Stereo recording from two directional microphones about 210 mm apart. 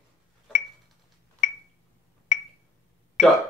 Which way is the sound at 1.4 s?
35° left (ahead or behind).